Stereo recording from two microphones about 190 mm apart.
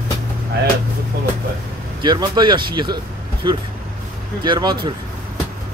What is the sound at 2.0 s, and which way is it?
Speech, 25° right (ahead or behind).